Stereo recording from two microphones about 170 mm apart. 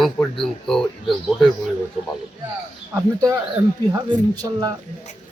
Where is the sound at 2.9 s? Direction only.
20° right (ahead or behind).